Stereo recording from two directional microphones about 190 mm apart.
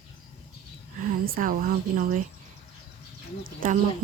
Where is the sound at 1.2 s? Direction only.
50° right (ahead or behind).